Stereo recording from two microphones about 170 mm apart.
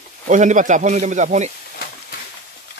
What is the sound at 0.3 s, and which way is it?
Speech, 45° right (ahead or behind).